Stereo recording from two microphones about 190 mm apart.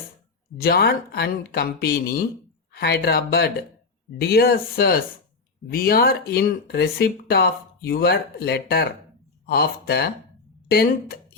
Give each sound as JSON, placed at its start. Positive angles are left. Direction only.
{"t": 0.6, "sound": "speech", "side_deg": 55}